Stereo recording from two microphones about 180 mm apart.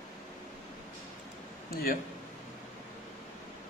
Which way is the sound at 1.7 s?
55° left (ahead or behind).